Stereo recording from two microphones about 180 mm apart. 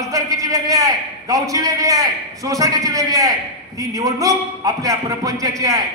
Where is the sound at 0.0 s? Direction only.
15° right (ahead or behind).